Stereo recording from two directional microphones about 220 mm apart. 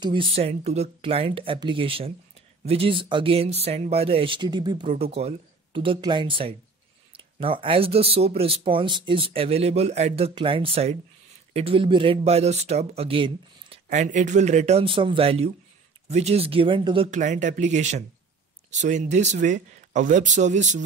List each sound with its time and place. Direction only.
0.0 s speech: 25° right (ahead or behind)